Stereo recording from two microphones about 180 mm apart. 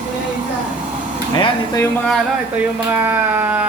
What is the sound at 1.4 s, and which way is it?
Speech, 20° left (ahead or behind).